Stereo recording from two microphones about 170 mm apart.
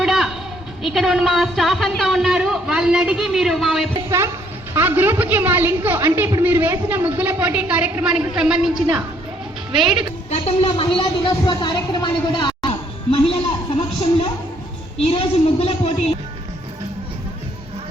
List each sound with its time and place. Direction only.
0.0 s a sound: centre (ahead or behind)
0.8 s speech: centre (ahead or behind)
4.7 s a woman's voice: 15° right (ahead or behind)
10.2 s a woman's voice: 35° left (ahead or behind)